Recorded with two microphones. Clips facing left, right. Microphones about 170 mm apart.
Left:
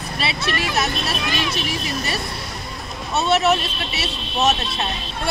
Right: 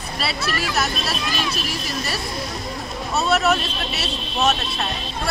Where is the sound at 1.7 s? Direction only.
Centre (ahead or behind).